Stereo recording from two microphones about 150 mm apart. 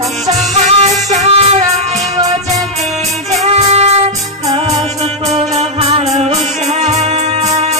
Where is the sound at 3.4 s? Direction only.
45° right (ahead or behind).